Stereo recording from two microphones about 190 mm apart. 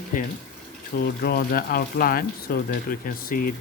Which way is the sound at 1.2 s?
55° left (ahead or behind).